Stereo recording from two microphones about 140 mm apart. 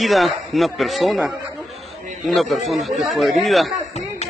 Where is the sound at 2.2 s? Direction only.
Centre (ahead or behind).